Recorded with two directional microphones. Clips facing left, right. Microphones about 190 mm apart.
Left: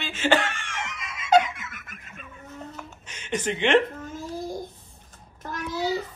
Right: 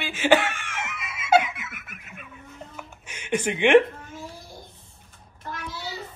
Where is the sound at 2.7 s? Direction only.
10° right (ahead or behind).